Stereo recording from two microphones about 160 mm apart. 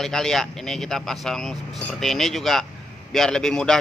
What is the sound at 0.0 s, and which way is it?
Speech, centre (ahead or behind).